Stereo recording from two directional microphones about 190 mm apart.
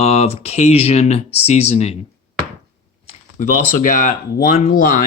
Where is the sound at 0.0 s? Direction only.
35° left (ahead or behind).